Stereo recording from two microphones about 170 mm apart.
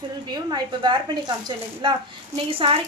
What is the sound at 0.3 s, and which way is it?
A woman's voice, 25° right (ahead or behind).